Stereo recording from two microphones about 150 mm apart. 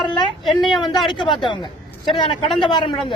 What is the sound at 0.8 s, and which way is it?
A woman's voice, 30° left (ahead or behind).